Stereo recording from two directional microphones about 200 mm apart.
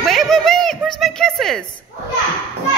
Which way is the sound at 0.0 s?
Centre (ahead or behind).